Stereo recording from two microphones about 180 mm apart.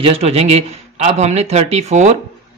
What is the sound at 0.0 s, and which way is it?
Speech, 35° right (ahead or behind).